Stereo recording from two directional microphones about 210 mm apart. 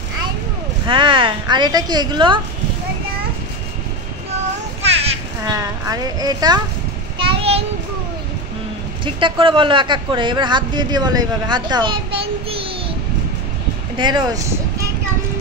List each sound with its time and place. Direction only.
0.8 s a man's voice: 25° right (ahead or behind)
4.8 s a sound: 30° right (ahead or behind)
5.5 s speech: 15° right (ahead or behind)
7.2 s child singing: 25° right (ahead or behind)
9.0 s a man's voice: 25° right (ahead or behind)
13.9 s a man's voice: 20° right (ahead or behind)